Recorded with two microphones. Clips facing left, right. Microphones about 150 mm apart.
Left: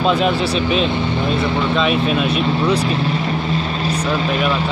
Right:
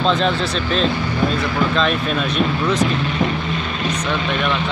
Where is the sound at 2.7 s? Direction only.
35° left (ahead or behind).